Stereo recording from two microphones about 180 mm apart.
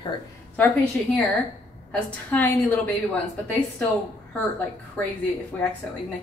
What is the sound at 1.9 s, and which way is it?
Speech, 10° left (ahead or behind).